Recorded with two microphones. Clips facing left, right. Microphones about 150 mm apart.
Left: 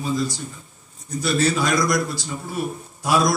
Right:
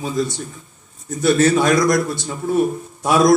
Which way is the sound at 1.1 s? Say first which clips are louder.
Right 6 dB; 55° right (ahead or behind).